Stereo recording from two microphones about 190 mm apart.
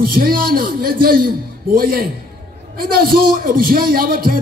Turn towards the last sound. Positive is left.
turn(degrees=-50)  # may be behind; listen again after turning